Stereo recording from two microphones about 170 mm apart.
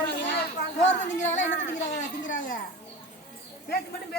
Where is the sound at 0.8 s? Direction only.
45° left (ahead or behind).